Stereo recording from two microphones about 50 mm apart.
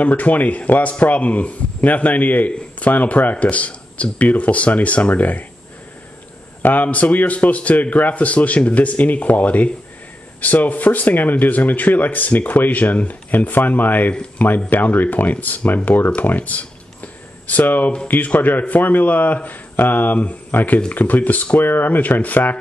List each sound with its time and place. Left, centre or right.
0.0 s a man's voice: left
6.6 s a man's voice: left
16.2 s a sound: left
18.0 s a man's voice: left